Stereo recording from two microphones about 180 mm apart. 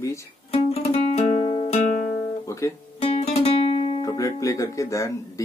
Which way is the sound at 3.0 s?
35° left (ahead or behind).